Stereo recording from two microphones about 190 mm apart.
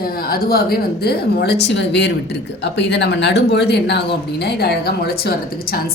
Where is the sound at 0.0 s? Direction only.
50° left (ahead or behind).